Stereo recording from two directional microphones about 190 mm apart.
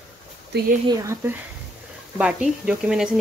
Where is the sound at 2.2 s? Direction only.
5° right (ahead or behind).